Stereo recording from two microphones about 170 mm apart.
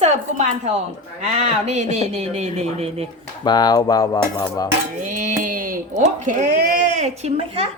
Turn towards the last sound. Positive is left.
turn(degrees=-35)  # may be behind; listen again after turning